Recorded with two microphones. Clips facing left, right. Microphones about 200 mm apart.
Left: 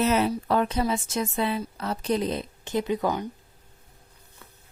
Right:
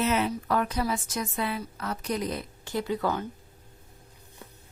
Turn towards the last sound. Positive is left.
turn(degrees=15)  # may be behind; listen again after turning